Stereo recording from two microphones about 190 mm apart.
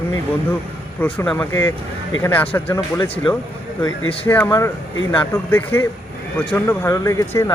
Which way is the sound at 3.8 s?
30° left (ahead or behind).